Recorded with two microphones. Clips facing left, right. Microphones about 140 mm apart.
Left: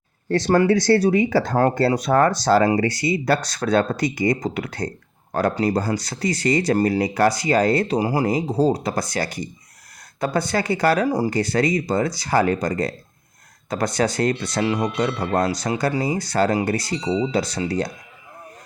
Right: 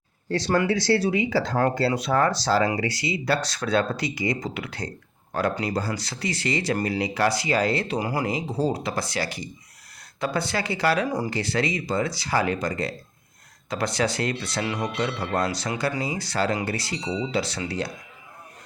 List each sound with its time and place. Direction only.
0.3 s speech: 50° left (ahead or behind)